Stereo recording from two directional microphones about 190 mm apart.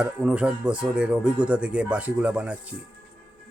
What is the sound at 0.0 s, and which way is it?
A man's voice, 5° right (ahead or behind).